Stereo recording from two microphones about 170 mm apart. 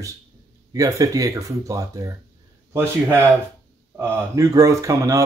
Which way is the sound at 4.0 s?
15° right (ahead or behind).